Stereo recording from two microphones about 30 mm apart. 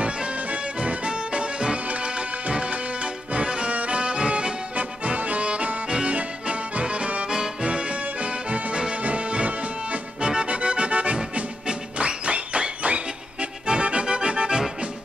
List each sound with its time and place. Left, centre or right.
0.7 s music: right
4.7 s music: right
5.9 s accordion: right
6.1 s music: right
7.2 s music: right
7.6 s music: right
8.7 s music: right
10.2 s music: right
10.5 s accordion: right
11.6 s music: right